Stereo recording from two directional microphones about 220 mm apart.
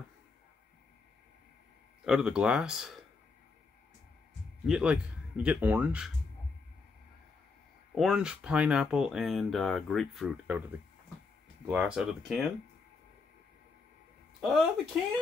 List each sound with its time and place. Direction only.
2.0 s speech: 5° right (ahead or behind)
4.6 s speech: 5° right (ahead or behind)
7.9 s speech: centre (ahead or behind)
11.6 s speech: 5° right (ahead or behind)
14.4 s speech: centre (ahead or behind)